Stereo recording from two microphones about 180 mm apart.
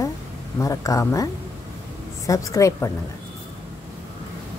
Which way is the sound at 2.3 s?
20° left (ahead or behind).